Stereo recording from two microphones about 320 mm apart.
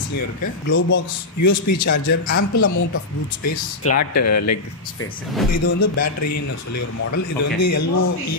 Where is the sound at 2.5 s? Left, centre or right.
Left.